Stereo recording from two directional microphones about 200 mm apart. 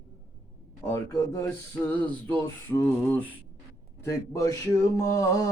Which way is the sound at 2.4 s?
10° left (ahead or behind).